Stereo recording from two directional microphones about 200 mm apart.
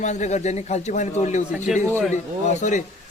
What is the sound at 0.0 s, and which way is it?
Speech, 35° left (ahead or behind).